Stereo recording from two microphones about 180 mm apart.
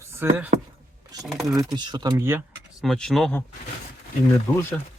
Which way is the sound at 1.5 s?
25° right (ahead or behind).